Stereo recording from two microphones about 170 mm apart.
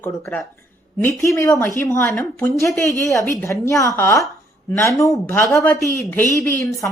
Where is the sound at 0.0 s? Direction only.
10° left (ahead or behind).